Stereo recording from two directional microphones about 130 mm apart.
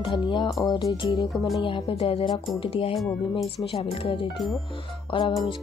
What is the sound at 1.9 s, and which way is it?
Speech, 50° left (ahead or behind).